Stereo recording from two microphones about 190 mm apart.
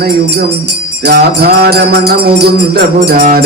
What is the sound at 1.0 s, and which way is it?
Music, 60° right (ahead or behind).